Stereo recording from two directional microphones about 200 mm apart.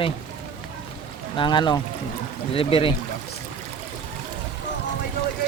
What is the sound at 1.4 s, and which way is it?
Speech, 20° left (ahead or behind).